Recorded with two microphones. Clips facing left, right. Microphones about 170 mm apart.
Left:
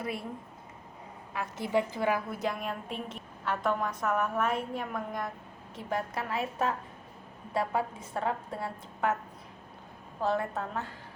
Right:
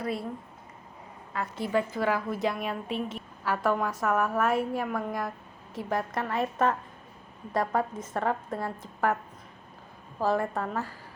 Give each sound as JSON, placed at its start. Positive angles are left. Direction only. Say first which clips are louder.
{"t": 1.5, "sound": "a woman's voice", "louder": "right 1 dB", "side_deg": 20}
{"t": 2.4, "sound": "a woman's voice", "louder": "right 3 dB", "side_deg": 0}
{"t": 10.2, "sound": "a woman's voice", "louder": "right 3 dB", "side_deg": 0}